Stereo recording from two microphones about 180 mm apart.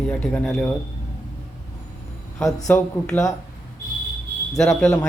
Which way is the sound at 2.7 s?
10° left (ahead or behind).